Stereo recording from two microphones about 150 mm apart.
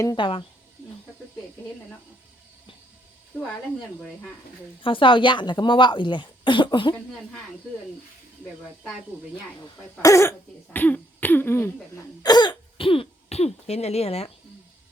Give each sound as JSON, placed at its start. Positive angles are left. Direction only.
{"t": 0.2, "sound": "speech", "side_deg": 35}
{"t": 4.8, "sound": "speech", "side_deg": 35}
{"t": 10.0, "sound": "cough", "side_deg": 20}